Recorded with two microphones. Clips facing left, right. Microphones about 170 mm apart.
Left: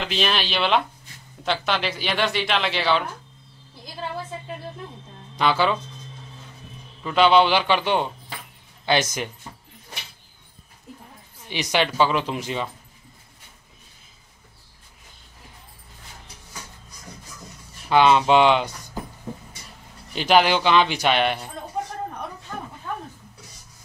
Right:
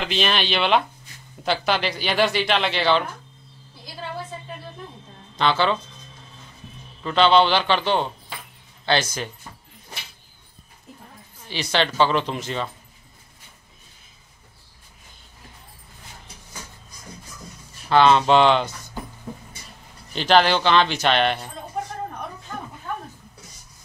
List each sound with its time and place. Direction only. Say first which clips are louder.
0.0 s speech: right 1 dB; centre (ahead or behind)
5.3 s speech: even; 10° left (ahead or behind)
7.0 s speech: even; 10° left (ahead or behind)
11.4 s speech: even; 15° left (ahead or behind)
17.8 s speech: right 1 dB; 10° left (ahead or behind)
20.2 s speech: even; 10° left (ahead or behind)